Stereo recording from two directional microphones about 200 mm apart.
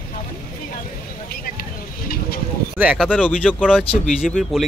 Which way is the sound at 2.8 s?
5° right (ahead or behind).